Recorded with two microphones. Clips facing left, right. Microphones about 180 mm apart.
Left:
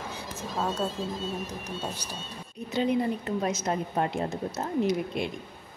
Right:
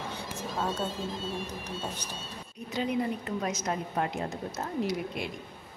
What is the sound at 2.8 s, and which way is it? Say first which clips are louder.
A woman's voice: left 4 dB; 25° left (ahead or behind).